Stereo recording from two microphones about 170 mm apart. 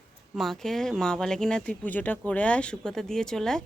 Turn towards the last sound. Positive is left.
turn(degrees=5)  # may be behind; listen again after turning